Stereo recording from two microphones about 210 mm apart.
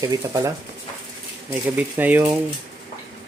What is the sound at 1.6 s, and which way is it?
Speech, 10° right (ahead or behind).